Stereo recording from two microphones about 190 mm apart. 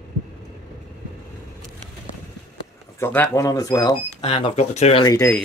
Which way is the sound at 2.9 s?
15° left (ahead or behind).